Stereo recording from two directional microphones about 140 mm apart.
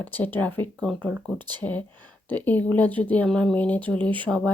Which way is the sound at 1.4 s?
35° right (ahead or behind).